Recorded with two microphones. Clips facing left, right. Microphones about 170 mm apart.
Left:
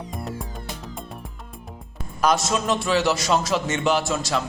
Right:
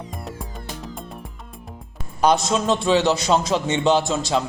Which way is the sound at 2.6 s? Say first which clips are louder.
Right 4 dB; 20° right (ahead or behind).